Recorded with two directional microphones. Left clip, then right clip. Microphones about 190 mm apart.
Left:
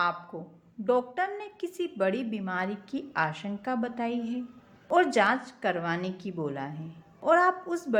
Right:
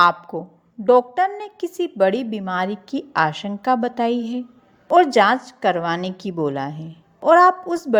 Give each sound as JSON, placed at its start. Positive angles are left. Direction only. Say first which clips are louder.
{"t": 0.0, "sound": "a woman's voice", "louder": "right 13 dB", "side_deg": -40}